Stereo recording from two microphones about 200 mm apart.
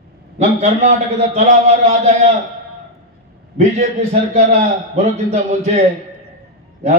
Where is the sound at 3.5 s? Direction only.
35° right (ahead or behind).